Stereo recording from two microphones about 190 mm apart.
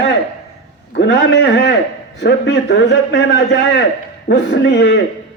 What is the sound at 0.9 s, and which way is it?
A man's voice, 70° left (ahead or behind).